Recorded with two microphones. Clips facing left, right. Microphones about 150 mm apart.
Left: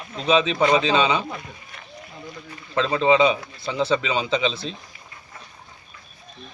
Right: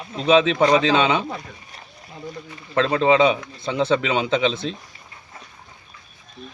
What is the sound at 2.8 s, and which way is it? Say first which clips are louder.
Speech: right 1 dB; 5° right (ahead or behind).